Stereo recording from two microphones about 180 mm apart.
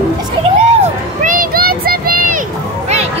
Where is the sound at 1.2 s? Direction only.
50° right (ahead or behind).